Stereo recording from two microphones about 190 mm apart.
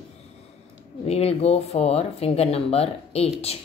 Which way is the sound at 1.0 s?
30° left (ahead or behind).